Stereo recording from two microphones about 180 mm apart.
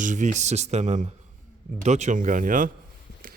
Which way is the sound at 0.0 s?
45° right (ahead or behind).